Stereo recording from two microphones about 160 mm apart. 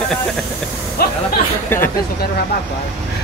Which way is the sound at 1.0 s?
70° left (ahead or behind).